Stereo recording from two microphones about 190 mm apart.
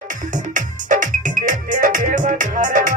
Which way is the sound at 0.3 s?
40° right (ahead or behind).